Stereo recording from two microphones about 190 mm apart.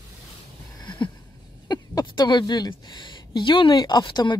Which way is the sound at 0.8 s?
20° left (ahead or behind).